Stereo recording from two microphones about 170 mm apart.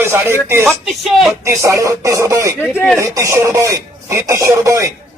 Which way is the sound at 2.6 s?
10° left (ahead or behind).